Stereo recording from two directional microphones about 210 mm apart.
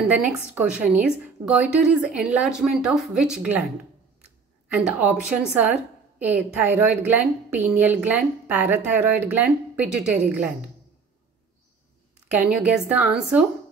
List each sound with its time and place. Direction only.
0.0 s a woman's voice: 5° right (ahead or behind)
4.7 s a woman's voice: 5° right (ahead or behind)
12.3 s a woman's voice: 5° right (ahead or behind)